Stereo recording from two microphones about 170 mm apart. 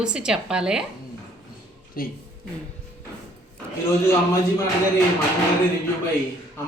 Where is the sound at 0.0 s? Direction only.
5° right (ahead or behind).